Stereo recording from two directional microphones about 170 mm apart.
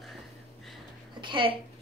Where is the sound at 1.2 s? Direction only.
30° right (ahead or behind).